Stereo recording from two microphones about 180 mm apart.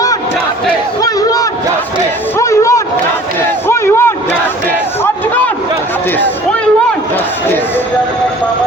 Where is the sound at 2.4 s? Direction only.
15° left (ahead or behind).